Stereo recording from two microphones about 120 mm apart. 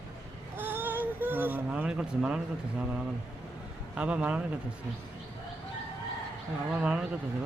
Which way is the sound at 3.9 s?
10° right (ahead or behind).